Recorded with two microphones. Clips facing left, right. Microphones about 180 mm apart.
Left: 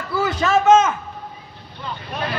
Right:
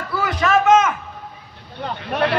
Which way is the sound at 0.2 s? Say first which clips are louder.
Even; 25° left (ahead or behind).